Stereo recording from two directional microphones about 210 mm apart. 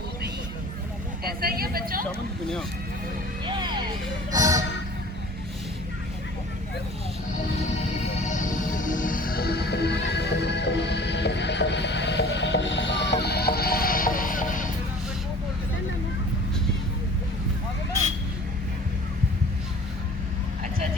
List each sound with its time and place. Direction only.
1.2 s speech: 45° right (ahead or behind)
3.4 s music: 20° right (ahead or behind)
8.3 s music: 40° left (ahead or behind)